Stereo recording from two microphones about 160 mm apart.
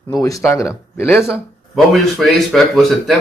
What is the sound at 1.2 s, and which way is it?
Speech, centre (ahead or behind).